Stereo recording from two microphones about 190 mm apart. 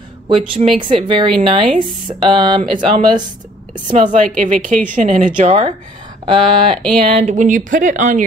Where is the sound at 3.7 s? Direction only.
40° right (ahead or behind).